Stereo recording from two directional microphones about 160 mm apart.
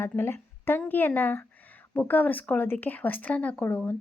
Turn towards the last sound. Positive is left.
turn(degrees=10)  # may be behind; listen again after turning